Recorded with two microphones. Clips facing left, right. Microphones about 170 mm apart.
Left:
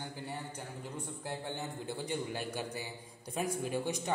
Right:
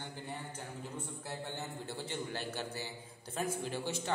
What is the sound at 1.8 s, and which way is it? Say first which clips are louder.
A man's voice: left 5 dB; 10° left (ahead or behind).